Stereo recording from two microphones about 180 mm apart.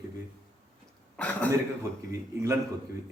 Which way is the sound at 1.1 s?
5° left (ahead or behind).